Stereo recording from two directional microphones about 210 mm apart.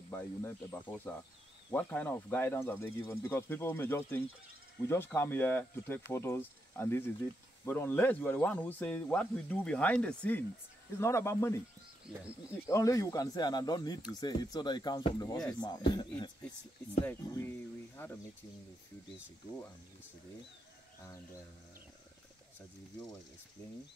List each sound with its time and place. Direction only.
0.1 s speech: 10° left (ahead or behind)
12.6 s speech: 15° left (ahead or behind)